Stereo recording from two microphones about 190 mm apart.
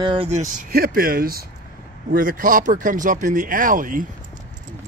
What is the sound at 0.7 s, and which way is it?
Speech, 50° right (ahead or behind).